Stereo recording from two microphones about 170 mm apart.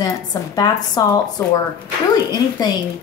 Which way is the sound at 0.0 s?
20° left (ahead or behind).